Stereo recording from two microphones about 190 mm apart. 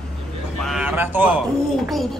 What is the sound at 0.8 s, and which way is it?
Speech, 10° right (ahead or behind).